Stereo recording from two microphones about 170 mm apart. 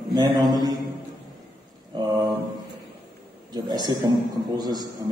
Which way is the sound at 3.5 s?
25° right (ahead or behind).